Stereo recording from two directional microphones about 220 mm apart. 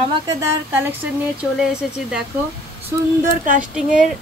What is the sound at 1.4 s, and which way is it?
Speech, 5° right (ahead or behind).